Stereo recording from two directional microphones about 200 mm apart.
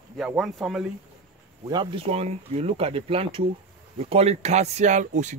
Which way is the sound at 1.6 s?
20° right (ahead or behind).